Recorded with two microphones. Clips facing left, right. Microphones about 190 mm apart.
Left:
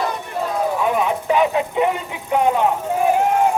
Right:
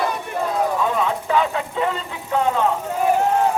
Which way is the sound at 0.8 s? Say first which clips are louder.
Left 2 dB; 15° left (ahead or behind).